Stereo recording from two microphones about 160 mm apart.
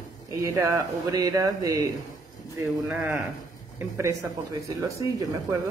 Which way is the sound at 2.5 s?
10° right (ahead or behind).